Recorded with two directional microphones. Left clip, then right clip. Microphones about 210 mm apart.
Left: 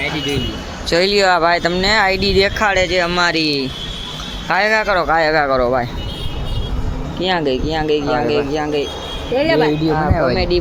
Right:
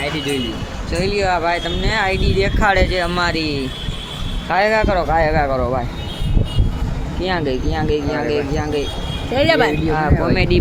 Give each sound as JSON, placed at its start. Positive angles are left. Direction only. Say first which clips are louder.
{"t": 0.9, "sound": "speech", "louder": "left 5 dB", "side_deg": 40}
{"t": 2.6, "sound": "speech", "louder": "left 1 dB", "side_deg": 10}
{"t": 7.2, "sound": "speech", "louder": "left 3 dB", "side_deg": 0}
{"t": 9.9, "sound": "speech", "louder": "left 2 dB", "side_deg": -15}